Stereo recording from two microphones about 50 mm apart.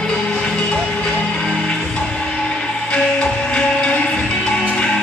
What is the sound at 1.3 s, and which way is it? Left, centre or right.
Music, centre.